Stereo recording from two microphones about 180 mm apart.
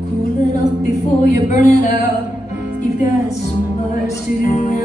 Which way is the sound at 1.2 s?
45° left (ahead or behind).